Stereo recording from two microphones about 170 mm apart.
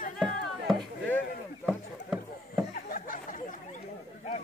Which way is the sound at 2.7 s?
55° left (ahead or behind).